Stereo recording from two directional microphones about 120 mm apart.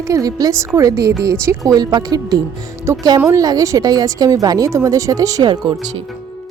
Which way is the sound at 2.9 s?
25° right (ahead or behind).